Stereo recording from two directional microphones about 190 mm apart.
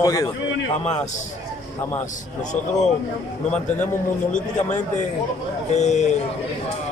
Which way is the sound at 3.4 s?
5° left (ahead or behind).